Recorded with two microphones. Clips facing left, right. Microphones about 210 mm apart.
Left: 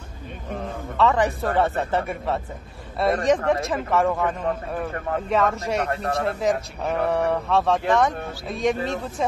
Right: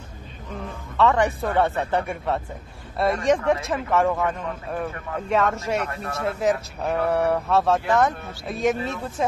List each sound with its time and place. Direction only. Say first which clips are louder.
0.9 s speech: right 1 dB; centre (ahead or behind)
4.4 s a man's voice: left 2 dB; 40° left (ahead or behind)
5.3 s speech: right 1 dB; centre (ahead or behind)
5.9 s a man's voice: left 6 dB; 35° left (ahead or behind)
6.2 s speech: right 3 dB; centre (ahead or behind)